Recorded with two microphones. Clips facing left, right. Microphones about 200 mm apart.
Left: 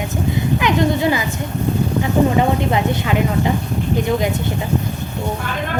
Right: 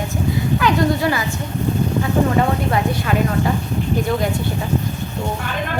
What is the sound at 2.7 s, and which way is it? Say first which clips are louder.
Speech: left 1 dB; 20° left (ahead or behind).